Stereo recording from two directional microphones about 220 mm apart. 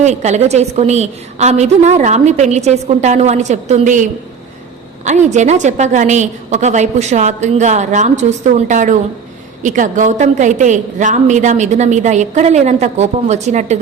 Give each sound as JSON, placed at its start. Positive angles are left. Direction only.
{"t": 0.0, "sound": "a woman's voice", "side_deg": -30}